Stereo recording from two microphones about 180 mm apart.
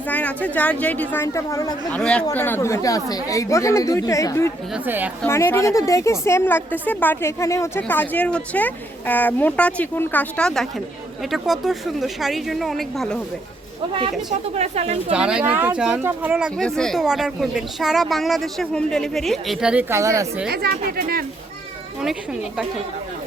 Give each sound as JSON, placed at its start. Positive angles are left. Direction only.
{"t": 0.1, "sound": "a woman's voice", "side_deg": 10}
{"t": 1.9, "sound": "a woman's voice", "side_deg": 5}
{"t": 4.7, "sound": "a woman's voice", "side_deg": -10}
{"t": 5.2, "sound": "a woman's voice", "side_deg": 10}
{"t": 14.6, "sound": "speech", "side_deg": -35}
{"t": 15.1, "sound": "speech", "side_deg": -5}
{"t": 20.5, "sound": "speech", "side_deg": -60}